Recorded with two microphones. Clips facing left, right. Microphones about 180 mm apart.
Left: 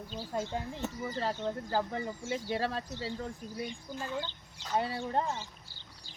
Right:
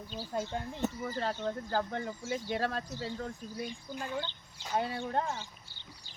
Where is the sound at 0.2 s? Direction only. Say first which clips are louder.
Even; centre (ahead or behind).